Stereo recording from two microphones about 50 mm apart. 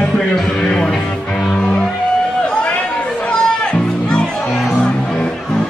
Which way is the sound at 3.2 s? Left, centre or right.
Left.